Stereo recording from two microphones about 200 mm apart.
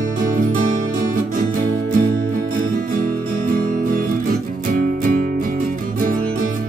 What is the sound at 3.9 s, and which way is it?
Music, 45° right (ahead or behind).